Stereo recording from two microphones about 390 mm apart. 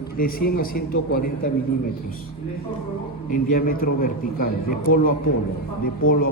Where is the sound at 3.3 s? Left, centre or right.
Left.